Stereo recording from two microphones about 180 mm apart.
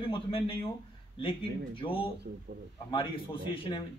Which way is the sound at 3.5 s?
30° left (ahead or behind).